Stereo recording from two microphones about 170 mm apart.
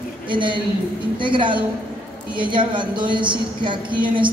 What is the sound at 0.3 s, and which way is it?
A woman's voice, 30° right (ahead or behind).